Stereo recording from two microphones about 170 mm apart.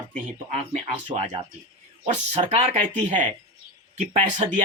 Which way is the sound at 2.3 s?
35° right (ahead or behind).